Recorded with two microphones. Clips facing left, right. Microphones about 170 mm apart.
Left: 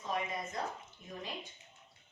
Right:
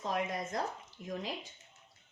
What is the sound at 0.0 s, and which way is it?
A woman's voice, 85° right.